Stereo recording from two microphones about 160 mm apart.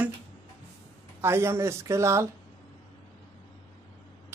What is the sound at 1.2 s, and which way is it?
A woman's voice, 15° right (ahead or behind).